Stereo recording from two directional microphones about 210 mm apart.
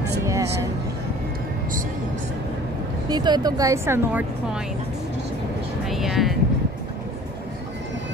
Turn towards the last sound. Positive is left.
turn(degrees=0)  # may be behind; listen again after turning